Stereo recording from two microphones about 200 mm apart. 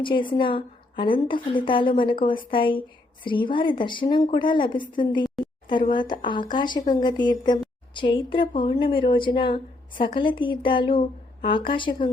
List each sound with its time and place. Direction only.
0.0 s a woman's voice: 25° left (ahead or behind)